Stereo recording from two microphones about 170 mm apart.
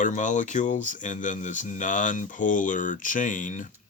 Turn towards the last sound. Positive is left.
turn(degrees=50)  # may be behind; listen again after turning